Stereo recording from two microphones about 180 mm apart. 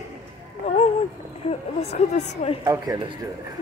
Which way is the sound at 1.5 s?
35° left (ahead or behind).